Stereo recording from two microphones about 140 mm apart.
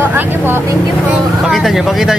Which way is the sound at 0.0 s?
15° right (ahead or behind).